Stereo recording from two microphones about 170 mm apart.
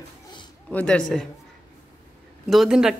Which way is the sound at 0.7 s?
5° left (ahead or behind).